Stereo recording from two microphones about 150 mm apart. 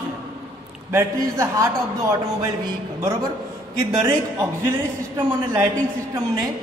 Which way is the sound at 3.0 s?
20° right (ahead or behind).